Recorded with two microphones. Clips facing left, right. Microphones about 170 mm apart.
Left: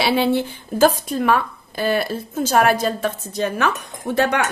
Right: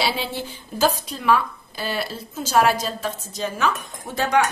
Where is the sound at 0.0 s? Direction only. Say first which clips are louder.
Left 8 dB; 60° left (ahead or behind).